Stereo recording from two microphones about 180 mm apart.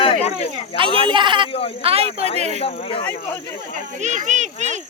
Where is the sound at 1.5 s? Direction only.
30° left (ahead or behind).